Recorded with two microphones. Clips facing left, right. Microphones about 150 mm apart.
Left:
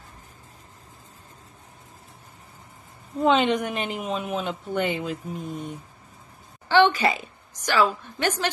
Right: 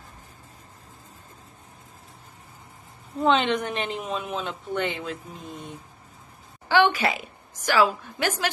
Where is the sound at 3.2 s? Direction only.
5° left (ahead or behind).